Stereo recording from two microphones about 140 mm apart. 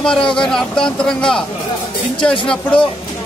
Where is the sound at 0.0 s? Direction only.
5° left (ahead or behind).